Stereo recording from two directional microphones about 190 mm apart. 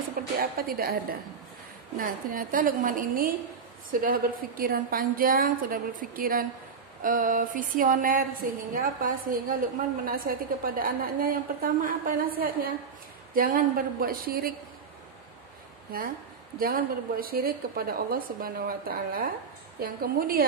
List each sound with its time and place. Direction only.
0.4 s a woman's voice: 50° right (ahead or behind)
2.0 s a woman's voice: 45° right (ahead or behind)
16.5 s a woman's voice: 50° right (ahead or behind)